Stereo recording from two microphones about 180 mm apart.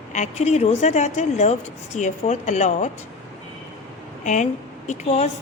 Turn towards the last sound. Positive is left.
turn(degrees=40)  # may be behind; listen again after turning